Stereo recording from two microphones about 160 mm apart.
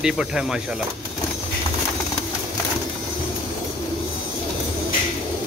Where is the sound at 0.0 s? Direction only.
5° right (ahead or behind).